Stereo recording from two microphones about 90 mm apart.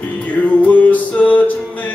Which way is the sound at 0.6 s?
15° left (ahead or behind).